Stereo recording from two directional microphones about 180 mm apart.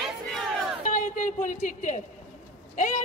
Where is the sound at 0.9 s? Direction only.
45° left (ahead or behind).